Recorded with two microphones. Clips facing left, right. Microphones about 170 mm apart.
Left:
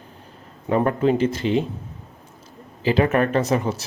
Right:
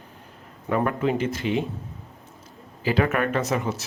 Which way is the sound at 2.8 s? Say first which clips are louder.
Left 4 dB; 25° left (ahead or behind).